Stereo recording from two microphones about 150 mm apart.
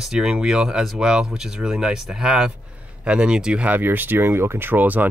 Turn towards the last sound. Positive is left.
turn(degrees=-10)  # may be behind; listen again after turning